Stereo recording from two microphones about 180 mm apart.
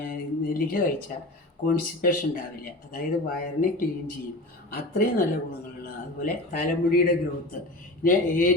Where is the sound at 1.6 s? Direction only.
55° left (ahead or behind).